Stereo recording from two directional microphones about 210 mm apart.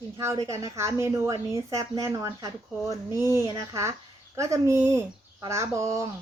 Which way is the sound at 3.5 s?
15° right (ahead or behind).